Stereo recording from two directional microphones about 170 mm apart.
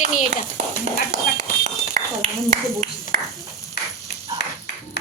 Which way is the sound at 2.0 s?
45° right (ahead or behind).